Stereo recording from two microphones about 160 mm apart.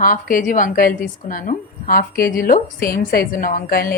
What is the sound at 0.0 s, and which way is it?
A woman's voice, 60° left (ahead or behind).